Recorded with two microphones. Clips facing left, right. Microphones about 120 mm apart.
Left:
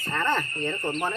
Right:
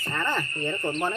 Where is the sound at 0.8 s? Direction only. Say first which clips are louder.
Right 2 dB; centre (ahead or behind).